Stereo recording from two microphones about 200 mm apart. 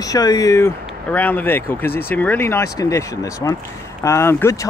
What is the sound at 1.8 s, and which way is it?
Speech, 50° left (ahead or behind).